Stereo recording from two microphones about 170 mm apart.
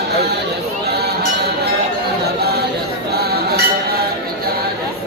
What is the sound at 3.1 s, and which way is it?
Chink, 65° right (ahead or behind).